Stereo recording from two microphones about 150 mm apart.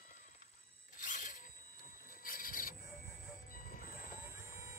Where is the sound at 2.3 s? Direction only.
70° left (ahead or behind).